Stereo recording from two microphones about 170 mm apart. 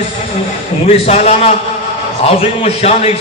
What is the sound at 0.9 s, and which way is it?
A man's voice, 40° left (ahead or behind).